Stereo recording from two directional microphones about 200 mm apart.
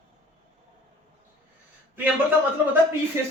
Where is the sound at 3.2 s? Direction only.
10° right (ahead or behind).